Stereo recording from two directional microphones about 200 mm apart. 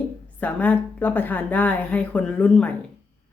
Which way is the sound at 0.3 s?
10° left (ahead or behind).